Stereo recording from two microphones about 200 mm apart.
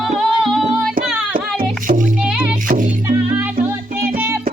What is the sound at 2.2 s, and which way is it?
Music, 5° right (ahead or behind).